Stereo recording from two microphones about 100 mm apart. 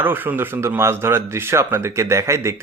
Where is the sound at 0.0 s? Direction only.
20° right (ahead or behind).